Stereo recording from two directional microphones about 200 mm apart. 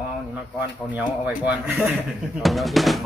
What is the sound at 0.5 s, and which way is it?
Speech, 5° right (ahead or behind).